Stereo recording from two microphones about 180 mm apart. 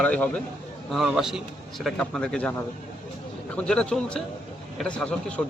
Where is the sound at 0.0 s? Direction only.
5° left (ahead or behind).